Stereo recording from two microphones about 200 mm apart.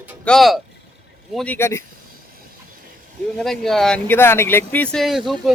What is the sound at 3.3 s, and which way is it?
Speech, centre (ahead or behind).